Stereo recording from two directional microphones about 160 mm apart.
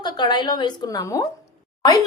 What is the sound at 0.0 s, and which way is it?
A woman's voice, 25° left (ahead or behind).